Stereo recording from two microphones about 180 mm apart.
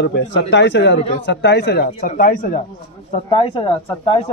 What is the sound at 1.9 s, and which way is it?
Speech, 45° left (ahead or behind).